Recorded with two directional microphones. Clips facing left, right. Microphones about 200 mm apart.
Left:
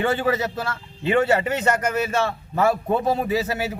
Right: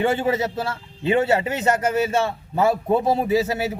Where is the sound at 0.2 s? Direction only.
25° right (ahead or behind).